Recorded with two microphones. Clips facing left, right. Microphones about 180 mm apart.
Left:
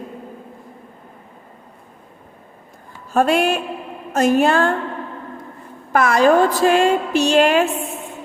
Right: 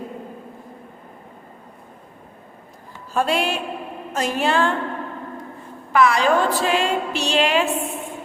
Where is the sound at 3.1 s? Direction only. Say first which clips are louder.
Left 5 dB; 50° left (ahead or behind).